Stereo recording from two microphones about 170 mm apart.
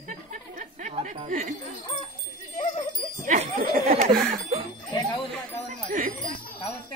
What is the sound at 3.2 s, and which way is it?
Bicycle bell, 40° right (ahead or behind).